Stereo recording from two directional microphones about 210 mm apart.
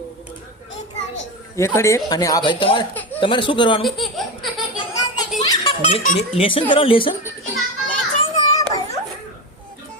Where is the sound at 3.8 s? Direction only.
Centre (ahead or behind).